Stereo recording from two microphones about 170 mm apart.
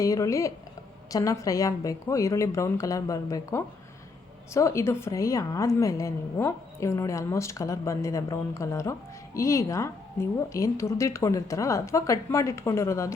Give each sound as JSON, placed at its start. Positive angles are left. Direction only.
{"t": 0.0, "sound": "a woman's voice", "side_deg": 20}